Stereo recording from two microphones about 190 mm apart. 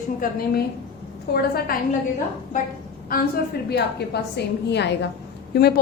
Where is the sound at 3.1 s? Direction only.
50° left (ahead or behind).